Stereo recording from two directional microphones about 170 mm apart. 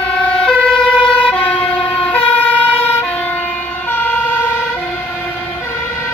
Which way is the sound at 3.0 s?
10° left (ahead or behind).